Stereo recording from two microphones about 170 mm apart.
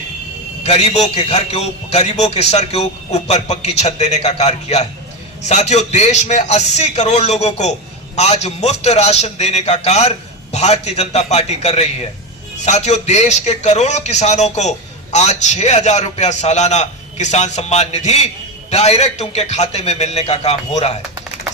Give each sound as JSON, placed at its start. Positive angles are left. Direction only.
{"t": 0.6, "sound": "a man's voice", "side_deg": 40}